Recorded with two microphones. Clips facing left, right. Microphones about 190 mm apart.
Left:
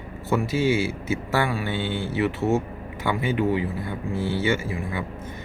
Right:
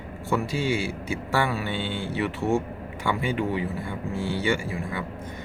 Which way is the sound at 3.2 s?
20° left (ahead or behind).